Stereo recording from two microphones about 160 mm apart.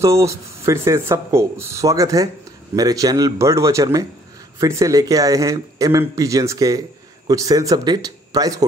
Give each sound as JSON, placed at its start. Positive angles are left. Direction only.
{"t": 0.0, "sound": "speech", "side_deg": -20}